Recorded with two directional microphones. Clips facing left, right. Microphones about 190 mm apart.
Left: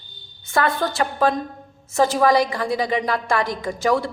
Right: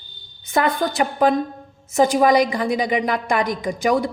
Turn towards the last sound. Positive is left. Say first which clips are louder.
# right 1 dB
turn(degrees=-15)  # may be behind; listen again after turning